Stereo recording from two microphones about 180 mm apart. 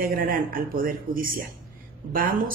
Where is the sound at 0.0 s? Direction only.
55° right (ahead or behind).